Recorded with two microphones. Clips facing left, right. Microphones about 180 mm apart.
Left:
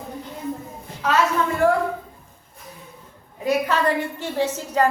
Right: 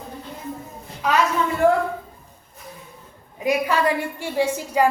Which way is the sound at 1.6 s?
20° right (ahead or behind).